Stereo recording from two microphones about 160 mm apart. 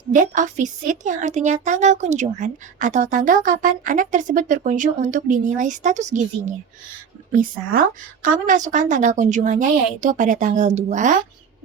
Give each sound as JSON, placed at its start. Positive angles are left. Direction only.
{"t": 0.1, "sound": "a woman's voice", "side_deg": -55}
{"t": 7.3, "sound": "a woman's voice", "side_deg": -60}